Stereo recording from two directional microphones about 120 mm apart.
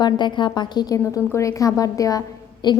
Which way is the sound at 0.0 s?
40° left (ahead or behind).